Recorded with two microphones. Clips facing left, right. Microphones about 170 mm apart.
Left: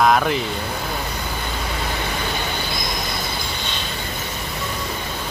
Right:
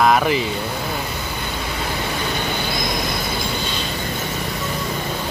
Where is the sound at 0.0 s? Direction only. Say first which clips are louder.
Right 1 dB; 5° right (ahead or behind).